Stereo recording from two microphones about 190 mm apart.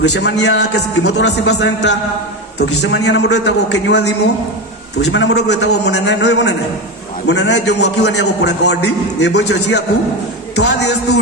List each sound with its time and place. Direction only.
0.1 s a man's voice: 65° left (ahead or behind)
5.1 s a man's voice: 70° left (ahead or behind)